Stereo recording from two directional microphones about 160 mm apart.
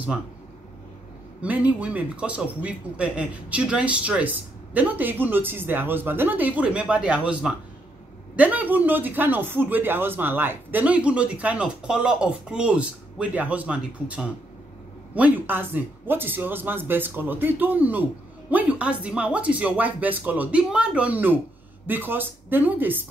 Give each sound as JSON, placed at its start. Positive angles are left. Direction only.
{"t": 1.4, "sound": "speech", "side_deg": -10}